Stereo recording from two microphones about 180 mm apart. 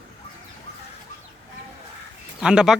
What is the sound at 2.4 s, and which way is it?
Speech, 5° right (ahead or behind).